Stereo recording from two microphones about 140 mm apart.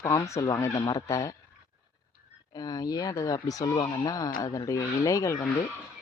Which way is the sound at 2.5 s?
25° left (ahead or behind).